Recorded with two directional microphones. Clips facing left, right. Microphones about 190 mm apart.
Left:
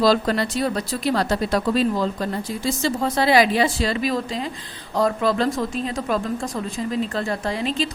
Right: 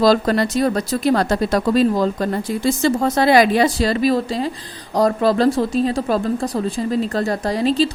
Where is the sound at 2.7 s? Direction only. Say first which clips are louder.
Right 5 dB; 55° right (ahead or behind).